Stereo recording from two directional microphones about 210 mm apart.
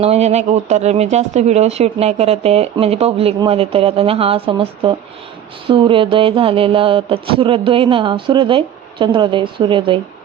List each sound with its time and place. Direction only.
0.0 s speech: 30° right (ahead or behind)